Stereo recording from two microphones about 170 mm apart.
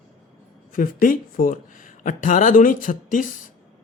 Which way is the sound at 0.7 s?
55° left (ahead or behind).